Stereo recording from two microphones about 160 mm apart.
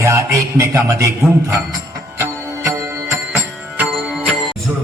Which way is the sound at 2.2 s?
15° right (ahead or behind).